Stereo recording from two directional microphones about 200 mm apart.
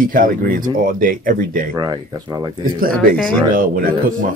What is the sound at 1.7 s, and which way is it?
Speech, 20° right (ahead or behind).